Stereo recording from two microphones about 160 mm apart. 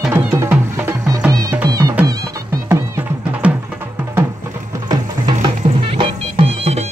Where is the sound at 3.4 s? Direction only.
5° right (ahead or behind).